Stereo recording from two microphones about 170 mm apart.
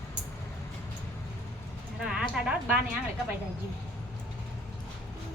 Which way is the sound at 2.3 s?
5° right (ahead or behind).